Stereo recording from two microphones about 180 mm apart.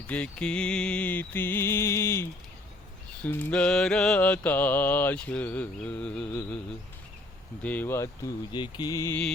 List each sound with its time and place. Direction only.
0.1 s mantra: 5° left (ahead or behind)
7.6 s mantra: 10° left (ahead or behind)